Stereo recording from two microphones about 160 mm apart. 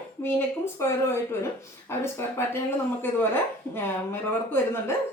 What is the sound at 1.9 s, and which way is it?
A woman's voice, 15° left (ahead or behind).